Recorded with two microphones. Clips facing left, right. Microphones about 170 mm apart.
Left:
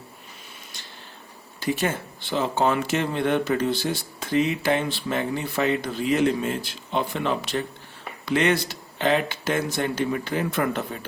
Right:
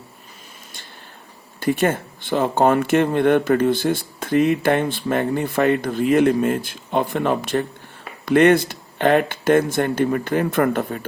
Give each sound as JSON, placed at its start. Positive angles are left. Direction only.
{"t": 1.5, "sound": "speech", "side_deg": -55}